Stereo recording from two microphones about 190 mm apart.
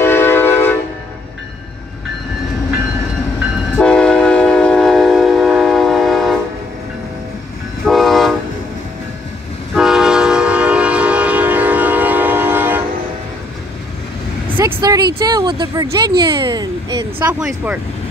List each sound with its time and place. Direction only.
0.0 s train: 10° left (ahead or behind)
3.7 s train: 5° left (ahead or behind)
7.8 s train: centre (ahead or behind)
9.8 s train: centre (ahead or behind)
14.6 s vehicle: 15° right (ahead or behind)
16.2 s speech: 25° right (ahead or behind)